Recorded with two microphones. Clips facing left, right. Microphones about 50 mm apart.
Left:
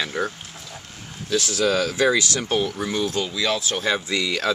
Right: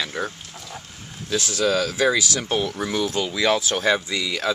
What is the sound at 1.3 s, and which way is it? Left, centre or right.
Speech, centre.